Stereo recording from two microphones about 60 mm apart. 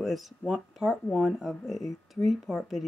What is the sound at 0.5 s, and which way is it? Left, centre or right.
Speech, centre.